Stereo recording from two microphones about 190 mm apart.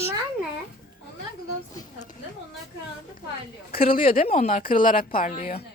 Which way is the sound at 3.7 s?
50° left (ahead or behind).